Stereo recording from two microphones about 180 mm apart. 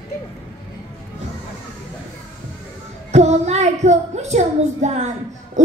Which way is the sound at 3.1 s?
40° right (ahead or behind).